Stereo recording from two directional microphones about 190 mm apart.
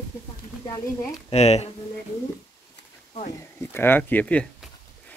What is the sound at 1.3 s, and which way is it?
Speech, 35° left (ahead or behind).